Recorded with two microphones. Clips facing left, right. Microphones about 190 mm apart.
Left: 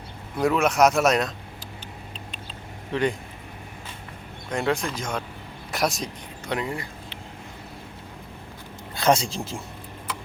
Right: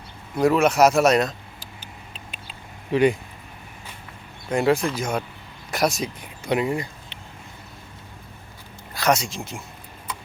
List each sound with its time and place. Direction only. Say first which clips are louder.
0.3 s speech: right 3 dB; centre (ahead or behind)
2.9 s speech: right 6 dB; 10° right (ahead or behind)
4.5 s speech: right 5 dB; 5° right (ahead or behind)
9.0 s speech: left 1 dB; 30° left (ahead or behind)